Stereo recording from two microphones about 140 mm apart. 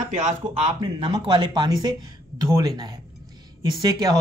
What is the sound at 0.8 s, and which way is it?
Speech, 35° right (ahead or behind).